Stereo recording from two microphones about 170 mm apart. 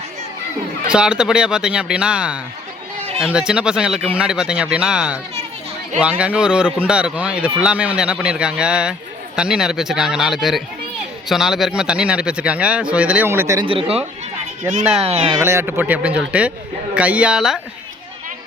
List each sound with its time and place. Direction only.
0.9 s speech: 5° right (ahead or behind)
13.7 s speech: 35° right (ahead or behind)
15.0 s speech: 35° right (ahead or behind)
15.4 s speech: 15° right (ahead or behind)